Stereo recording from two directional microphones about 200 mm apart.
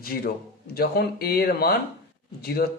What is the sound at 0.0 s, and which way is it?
Speech, 50° left (ahead or behind).